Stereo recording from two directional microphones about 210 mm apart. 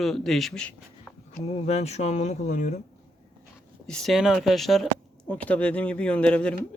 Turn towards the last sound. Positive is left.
turn(degrees=5)  # may be behind; listen again after turning